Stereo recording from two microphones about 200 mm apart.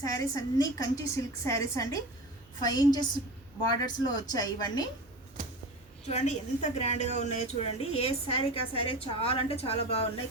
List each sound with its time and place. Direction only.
0.0 s a woman's voice: 15° left (ahead or behind)
6.1 s a woman's voice: 35° left (ahead or behind)